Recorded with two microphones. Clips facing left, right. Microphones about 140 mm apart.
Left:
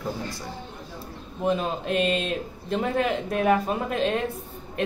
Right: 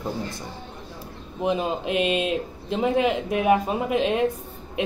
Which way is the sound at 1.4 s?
15° right (ahead or behind).